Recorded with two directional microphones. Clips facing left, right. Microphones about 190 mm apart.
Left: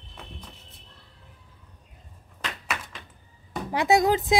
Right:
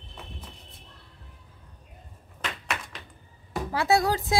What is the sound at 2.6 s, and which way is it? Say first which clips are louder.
Tap: even; centre (ahead or behind).